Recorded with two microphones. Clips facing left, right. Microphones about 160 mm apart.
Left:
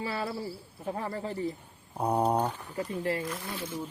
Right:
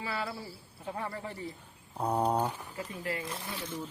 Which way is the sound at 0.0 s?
30° left (ahead or behind).